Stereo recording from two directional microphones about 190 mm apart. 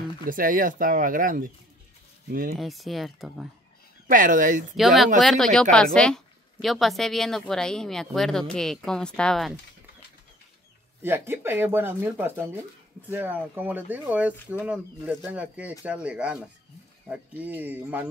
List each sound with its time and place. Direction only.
0.3 s speech: 45° right (ahead or behind)
2.5 s speech: centre (ahead or behind)
4.1 s speech: 45° right (ahead or behind)
4.7 s speech: centre (ahead or behind)
11.0 s speech: 10° right (ahead or behind)